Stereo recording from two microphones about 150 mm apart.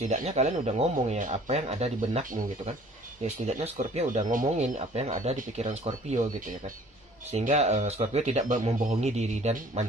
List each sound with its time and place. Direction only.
0.0 s speech: 50° right (ahead or behind)